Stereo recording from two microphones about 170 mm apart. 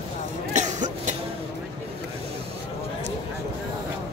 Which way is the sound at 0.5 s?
45° right (ahead or behind).